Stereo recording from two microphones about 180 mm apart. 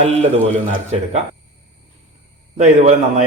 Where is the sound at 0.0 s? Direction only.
35° right (ahead or behind).